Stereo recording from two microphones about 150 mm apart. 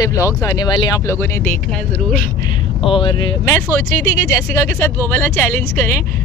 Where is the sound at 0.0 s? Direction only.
20° left (ahead or behind); by 2.3 s 5° left (ahead or behind).